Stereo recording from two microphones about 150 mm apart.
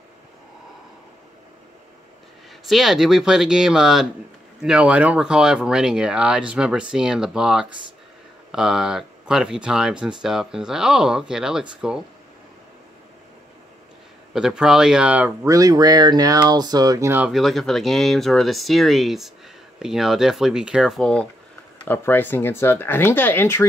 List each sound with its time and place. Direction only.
2.7 s speech: centre (ahead or behind)
14.3 s speech: 5° right (ahead or behind)
15.4 s speech: 25° right (ahead or behind)
17.3 s speech: centre (ahead or behind); by 23.7 s 15° left (ahead or behind)